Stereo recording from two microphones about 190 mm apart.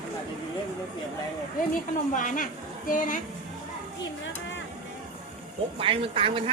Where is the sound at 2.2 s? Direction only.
45° left (ahead or behind).